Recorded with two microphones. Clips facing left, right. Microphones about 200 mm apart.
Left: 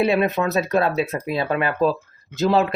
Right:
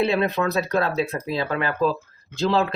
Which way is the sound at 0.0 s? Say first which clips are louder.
Left 2 dB; 15° left (ahead or behind).